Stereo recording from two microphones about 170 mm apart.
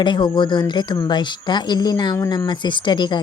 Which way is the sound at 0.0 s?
25° left (ahead or behind).